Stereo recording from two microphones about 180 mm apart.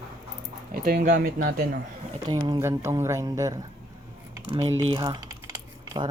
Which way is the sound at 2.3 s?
20° right (ahead or behind).